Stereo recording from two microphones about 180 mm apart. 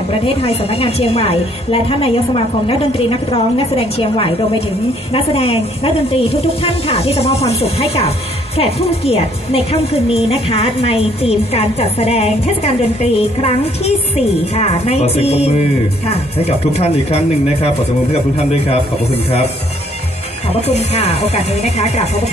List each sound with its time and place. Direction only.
0.1 s a woman's voice: 30° left (ahead or behind)
20.6 s a woman's voice: 35° left (ahead or behind)